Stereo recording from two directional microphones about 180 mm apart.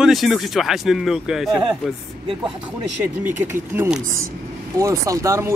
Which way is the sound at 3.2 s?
10° right (ahead or behind).